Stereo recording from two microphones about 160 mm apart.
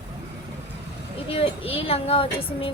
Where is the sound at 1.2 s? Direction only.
35° left (ahead or behind).